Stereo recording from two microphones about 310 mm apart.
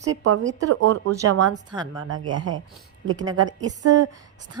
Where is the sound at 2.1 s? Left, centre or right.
Right.